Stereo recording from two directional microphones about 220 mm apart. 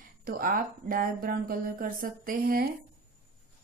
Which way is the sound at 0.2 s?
40° right (ahead or behind).